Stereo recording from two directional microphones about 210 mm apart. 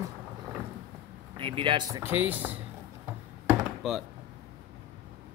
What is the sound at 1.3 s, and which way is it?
Speech, 25° right (ahead or behind).